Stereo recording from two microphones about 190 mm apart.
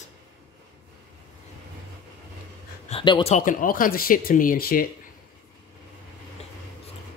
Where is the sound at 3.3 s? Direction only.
45° left (ahead or behind).